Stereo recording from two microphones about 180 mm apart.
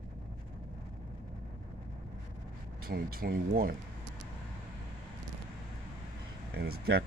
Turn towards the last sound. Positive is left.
turn(degrees=-65)  # may be behind; listen again after turning